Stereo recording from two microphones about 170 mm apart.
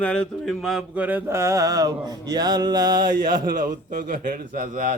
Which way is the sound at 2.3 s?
25° right (ahead or behind).